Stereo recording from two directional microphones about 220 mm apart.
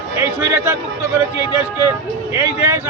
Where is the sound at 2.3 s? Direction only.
15° right (ahead or behind).